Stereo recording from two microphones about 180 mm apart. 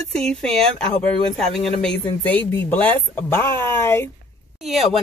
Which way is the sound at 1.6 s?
5° left (ahead or behind).